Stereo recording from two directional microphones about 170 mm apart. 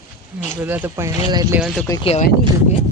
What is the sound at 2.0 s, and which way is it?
Speech, 40° left (ahead or behind).